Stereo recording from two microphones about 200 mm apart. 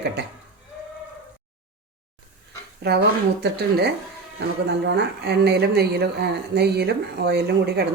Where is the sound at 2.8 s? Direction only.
55° right (ahead or behind).